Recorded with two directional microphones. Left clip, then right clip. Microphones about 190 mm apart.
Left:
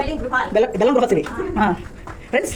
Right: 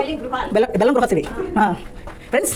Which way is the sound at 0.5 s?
45° right (ahead or behind).